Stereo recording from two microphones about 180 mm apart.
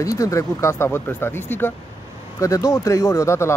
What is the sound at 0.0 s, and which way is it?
Speech, 20° left (ahead or behind).